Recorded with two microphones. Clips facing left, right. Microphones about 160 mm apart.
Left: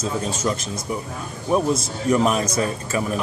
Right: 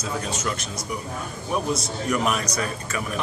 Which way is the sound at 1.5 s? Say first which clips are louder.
Left 6 dB; 35° left (ahead or behind).